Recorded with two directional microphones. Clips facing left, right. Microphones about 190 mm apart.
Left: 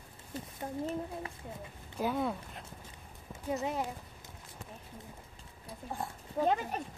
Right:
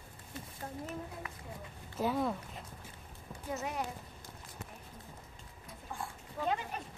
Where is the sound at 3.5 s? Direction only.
25° left (ahead or behind).